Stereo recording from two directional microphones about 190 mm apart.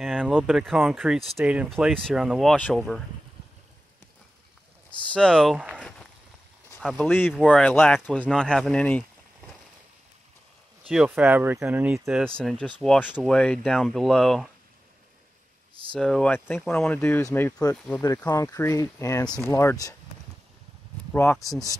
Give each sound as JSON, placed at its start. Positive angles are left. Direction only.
{"t": 0.0, "sound": "a sound", "side_deg": 5}
{"t": 0.4, "sound": "speech", "side_deg": 0}
{"t": 5.1, "sound": "speech", "side_deg": 5}
{"t": 5.8, "sound": "walk", "side_deg": 5}
{"t": 7.0, "sound": "speech", "side_deg": 10}
{"t": 10.9, "sound": "speech", "side_deg": -5}
{"t": 15.9, "sound": "speech", "side_deg": 5}
{"t": 19.2, "sound": "speech", "side_deg": 5}
{"t": 19.5, "sound": "speech", "side_deg": 15}
{"t": 21.1, "sound": "speech", "side_deg": 10}